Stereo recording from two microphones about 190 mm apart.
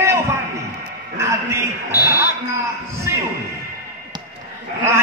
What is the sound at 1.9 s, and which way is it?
Speech, 15° left (ahead or behind).